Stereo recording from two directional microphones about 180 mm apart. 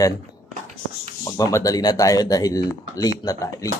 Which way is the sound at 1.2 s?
20° left (ahead or behind).